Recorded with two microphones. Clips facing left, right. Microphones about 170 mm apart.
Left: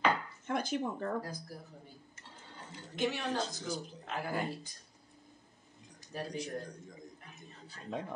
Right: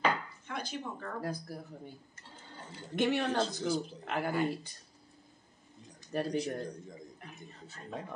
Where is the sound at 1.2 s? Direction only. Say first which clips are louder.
Right 6 dB; 60° right (ahead or behind).